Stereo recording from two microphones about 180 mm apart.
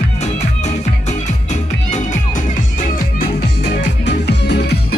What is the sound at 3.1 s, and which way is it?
Music, 75° left (ahead or behind).